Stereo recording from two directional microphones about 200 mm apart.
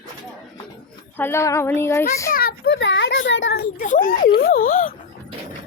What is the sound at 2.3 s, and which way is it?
A child's voice, 50° left (ahead or behind).